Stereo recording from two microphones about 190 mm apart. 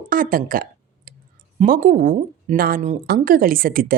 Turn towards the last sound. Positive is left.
turn(degrees=-50)  # may be behind; listen again after turning